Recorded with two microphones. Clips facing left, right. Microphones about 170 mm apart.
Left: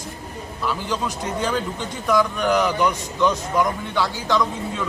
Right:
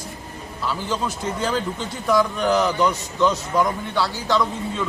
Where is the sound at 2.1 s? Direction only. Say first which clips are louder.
Even; 10° right (ahead or behind).